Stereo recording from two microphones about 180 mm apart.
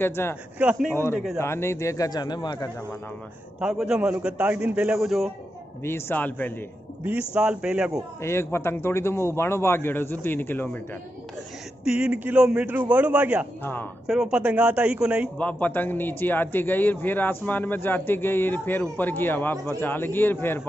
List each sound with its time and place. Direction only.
0.0 s a man's voice: 15° left (ahead or behind)
0.6 s a man's voice: 5° right (ahead or behind)
1.4 s a man's voice: 15° left (ahead or behind)
3.5 s a man's voice: 5° right (ahead or behind)
5.9 s a man's voice: 15° left (ahead or behind)
7.1 s a man's voice: 5° right (ahead or behind)
8.2 s a man's voice: 15° left (ahead or behind)
11.8 s a man's voice: 5° right (ahead or behind)
15.3 s a man's voice: 10° left (ahead or behind)